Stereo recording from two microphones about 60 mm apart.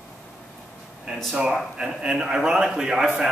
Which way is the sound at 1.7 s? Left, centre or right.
Centre.